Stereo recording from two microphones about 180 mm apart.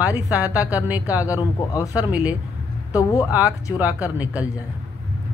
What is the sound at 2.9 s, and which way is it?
Speech, 20° left (ahead or behind).